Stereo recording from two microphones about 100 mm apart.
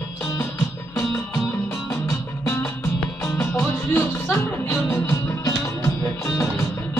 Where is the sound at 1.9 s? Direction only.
30° left (ahead or behind).